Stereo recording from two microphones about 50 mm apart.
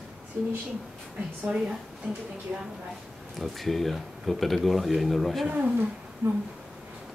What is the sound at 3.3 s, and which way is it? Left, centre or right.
Speech, centre.